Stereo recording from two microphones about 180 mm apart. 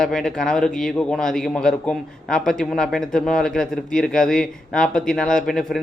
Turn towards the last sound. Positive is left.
turn(degrees=0)  # may be behind; listen again after turning